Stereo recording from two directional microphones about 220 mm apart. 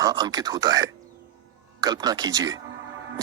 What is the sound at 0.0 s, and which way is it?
Speech, 15° right (ahead or behind).